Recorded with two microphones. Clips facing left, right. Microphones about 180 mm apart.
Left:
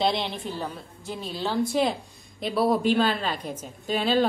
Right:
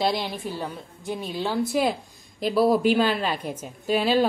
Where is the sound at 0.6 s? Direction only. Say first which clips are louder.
Right 1 dB; 15° right (ahead or behind).